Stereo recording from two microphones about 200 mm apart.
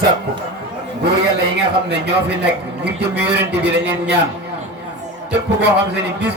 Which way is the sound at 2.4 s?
60° right (ahead or behind).